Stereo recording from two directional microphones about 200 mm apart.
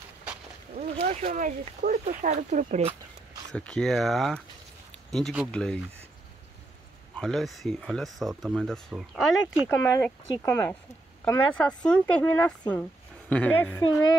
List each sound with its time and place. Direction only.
0.7 s speech: 40° right (ahead or behind)
3.5 s speech: 5° left (ahead or behind)
7.2 s speech: centre (ahead or behind)
9.7 s speech: 10° left (ahead or behind)